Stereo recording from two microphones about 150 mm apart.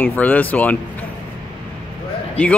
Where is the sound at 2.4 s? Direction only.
10° left (ahead or behind).